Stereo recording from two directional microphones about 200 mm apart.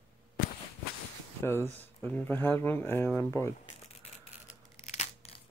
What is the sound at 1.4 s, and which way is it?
Speech, 10° left (ahead or behind).